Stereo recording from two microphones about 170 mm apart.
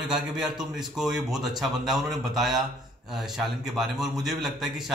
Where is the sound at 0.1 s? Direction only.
5° right (ahead or behind).